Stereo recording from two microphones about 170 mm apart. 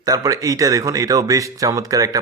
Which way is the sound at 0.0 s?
20° right (ahead or behind).